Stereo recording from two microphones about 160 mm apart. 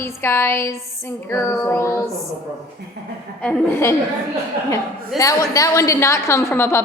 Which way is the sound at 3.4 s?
10° left (ahead or behind).